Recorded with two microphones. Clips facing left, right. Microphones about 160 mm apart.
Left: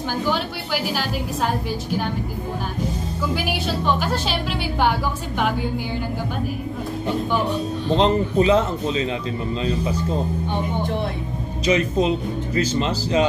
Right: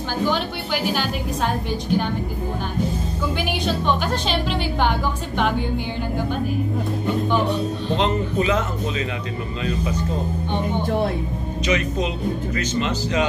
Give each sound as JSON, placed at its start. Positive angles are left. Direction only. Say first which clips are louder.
{"t": 3.6, "sound": "a woman's voice", "louder": "right 1 dB", "side_deg": 5}
{"t": 8.0, "sound": "speech", "louder": "left 4 dB", "side_deg": 30}
{"t": 11.6, "sound": "speech", "louder": "left 4 dB", "side_deg": 30}